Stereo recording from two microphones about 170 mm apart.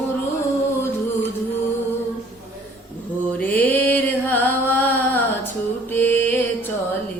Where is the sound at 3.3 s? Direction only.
10° left (ahead or behind).